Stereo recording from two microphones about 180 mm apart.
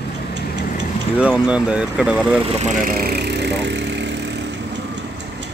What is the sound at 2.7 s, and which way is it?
Speech, 50° right (ahead or behind).